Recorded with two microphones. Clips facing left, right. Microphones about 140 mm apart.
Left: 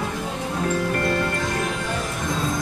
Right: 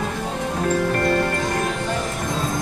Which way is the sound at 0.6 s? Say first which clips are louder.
Right 3 dB; 40° right (ahead or behind).